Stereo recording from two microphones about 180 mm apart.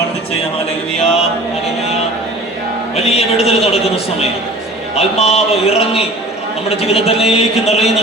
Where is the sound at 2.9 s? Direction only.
35° left (ahead or behind).